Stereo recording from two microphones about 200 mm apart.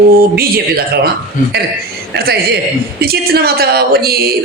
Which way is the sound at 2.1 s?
55° right (ahead or behind).